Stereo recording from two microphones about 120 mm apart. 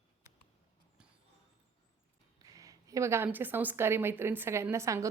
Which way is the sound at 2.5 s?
30° right (ahead or behind).